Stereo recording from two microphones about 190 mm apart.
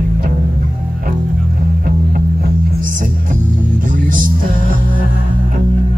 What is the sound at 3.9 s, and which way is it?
Music, 45° right (ahead or behind).